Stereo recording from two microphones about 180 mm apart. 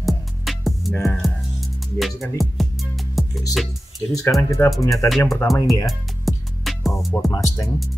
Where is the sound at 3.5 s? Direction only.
Centre (ahead or behind).